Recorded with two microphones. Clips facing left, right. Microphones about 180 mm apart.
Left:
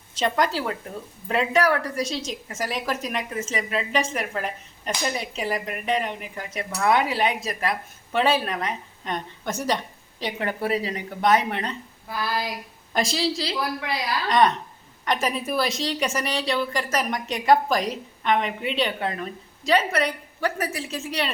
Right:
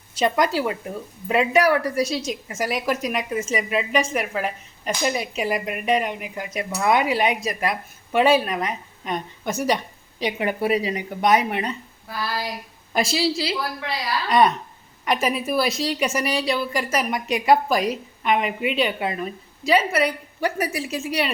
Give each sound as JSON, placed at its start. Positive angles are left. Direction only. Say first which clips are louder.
{"t": 0.1, "sound": "speech", "louder": "right 3 dB", "side_deg": -10}
{"t": 12.2, "sound": "speech", "louder": "left 1 dB", "side_deg": 15}
{"t": 12.9, "sound": "speech", "louder": "right 2 dB", "side_deg": -5}